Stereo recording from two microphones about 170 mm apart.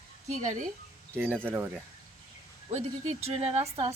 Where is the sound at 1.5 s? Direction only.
5° right (ahead or behind).